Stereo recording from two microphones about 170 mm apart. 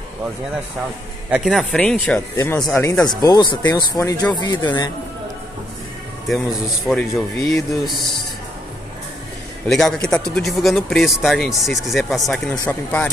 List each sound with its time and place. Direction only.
1.3 s speech: centre (ahead or behind); by 4.6 s 25° left (ahead or behind)
6.9 s speech: centre (ahead or behind)
9.7 s speech: centre (ahead or behind)